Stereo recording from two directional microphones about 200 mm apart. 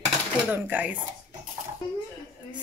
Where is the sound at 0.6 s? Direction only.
10° right (ahead or behind).